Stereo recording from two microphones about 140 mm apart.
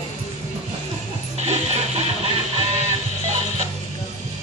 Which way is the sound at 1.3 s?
50° right (ahead or behind).